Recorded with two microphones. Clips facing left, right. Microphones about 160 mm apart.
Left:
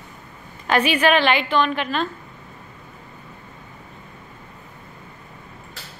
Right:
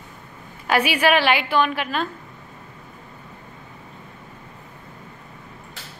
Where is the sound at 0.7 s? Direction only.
10° right (ahead or behind).